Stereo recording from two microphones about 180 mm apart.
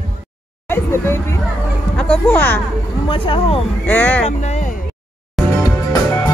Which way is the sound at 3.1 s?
30° left (ahead or behind).